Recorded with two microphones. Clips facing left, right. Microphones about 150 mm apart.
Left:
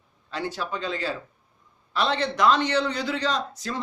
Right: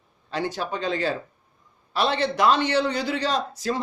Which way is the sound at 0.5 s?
55° right (ahead or behind).